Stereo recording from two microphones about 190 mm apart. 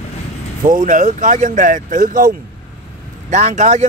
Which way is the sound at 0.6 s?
45° right (ahead or behind).